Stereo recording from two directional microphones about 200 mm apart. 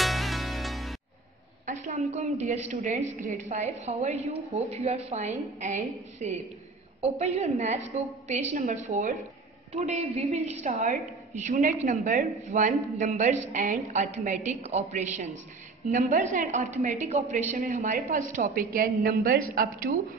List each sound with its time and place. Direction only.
0.0 s music: centre (ahead or behind)
1.7 s a woman's voice: 40° right (ahead or behind)